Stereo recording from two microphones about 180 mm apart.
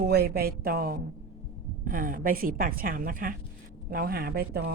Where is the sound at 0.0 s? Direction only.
60° right (ahead or behind).